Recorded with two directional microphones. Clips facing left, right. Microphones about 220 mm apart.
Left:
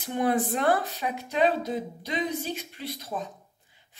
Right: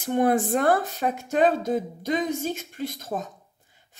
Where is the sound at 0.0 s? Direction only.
50° right (ahead or behind).